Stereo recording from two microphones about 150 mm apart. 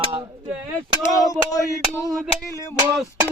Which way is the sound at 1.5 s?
20° left (ahead or behind).